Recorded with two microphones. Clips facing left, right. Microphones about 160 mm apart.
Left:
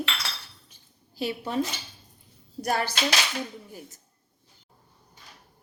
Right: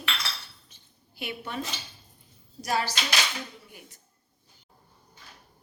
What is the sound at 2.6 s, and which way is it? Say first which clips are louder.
Speech: left 2 dB; 55° left (ahead or behind).